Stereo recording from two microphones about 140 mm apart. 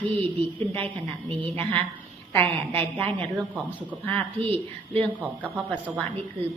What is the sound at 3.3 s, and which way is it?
Speech, 10° right (ahead or behind).